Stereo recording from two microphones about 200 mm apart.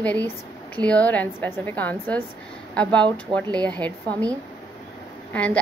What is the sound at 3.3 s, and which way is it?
Speech, 25° right (ahead or behind).